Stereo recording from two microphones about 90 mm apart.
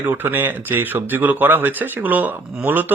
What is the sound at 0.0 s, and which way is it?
Speech, 20° right (ahead or behind).